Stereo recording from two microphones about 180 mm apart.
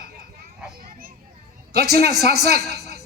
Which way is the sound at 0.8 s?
55° right (ahead or behind).